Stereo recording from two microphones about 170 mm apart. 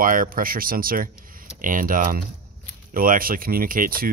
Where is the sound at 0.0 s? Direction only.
55° right (ahead or behind).